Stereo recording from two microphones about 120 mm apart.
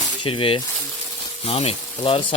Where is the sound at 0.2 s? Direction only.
50° left (ahead or behind).